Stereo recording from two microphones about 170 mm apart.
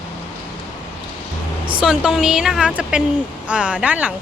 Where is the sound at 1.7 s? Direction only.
5° right (ahead or behind).